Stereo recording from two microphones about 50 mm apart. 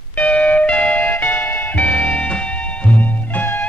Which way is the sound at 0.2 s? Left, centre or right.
Left.